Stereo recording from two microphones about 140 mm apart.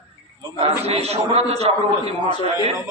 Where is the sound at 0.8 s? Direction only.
50° right (ahead or behind).